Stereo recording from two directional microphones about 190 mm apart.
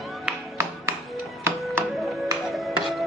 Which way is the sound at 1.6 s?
Centre (ahead or behind).